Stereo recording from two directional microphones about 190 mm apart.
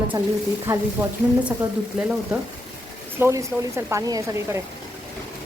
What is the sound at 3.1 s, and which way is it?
A woman's voice, 15° right (ahead or behind).